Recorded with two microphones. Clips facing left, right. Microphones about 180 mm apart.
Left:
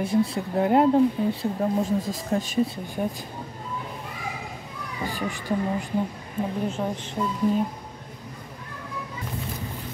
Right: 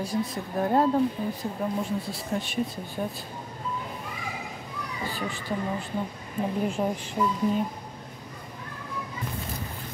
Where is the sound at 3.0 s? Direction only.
15° left (ahead or behind).